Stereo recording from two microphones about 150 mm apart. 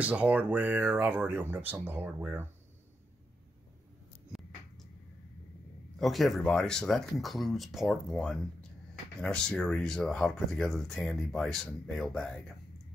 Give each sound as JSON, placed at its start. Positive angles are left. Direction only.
{"t": 0.0, "sound": "speech", "side_deg": -10}
{"t": 5.9, "sound": "speech", "side_deg": 0}